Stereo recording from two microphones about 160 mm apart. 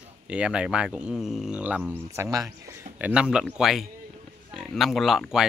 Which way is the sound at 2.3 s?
20° right (ahead or behind).